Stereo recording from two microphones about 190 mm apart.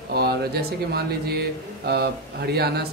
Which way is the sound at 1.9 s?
60° right (ahead or behind).